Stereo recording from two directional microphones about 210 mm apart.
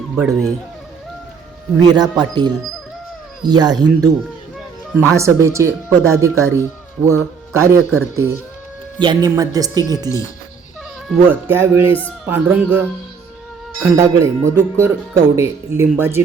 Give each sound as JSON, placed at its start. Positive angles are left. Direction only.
{"t": 0.2, "sound": "speech", "side_deg": 0}
{"t": 1.8, "sound": "speech", "side_deg": -20}
{"t": 5.1, "sound": "speech", "side_deg": -15}
{"t": 11.1, "sound": "speech", "side_deg": -10}